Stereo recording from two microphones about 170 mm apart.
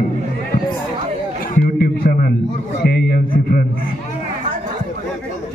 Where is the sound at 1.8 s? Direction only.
60° left (ahead or behind).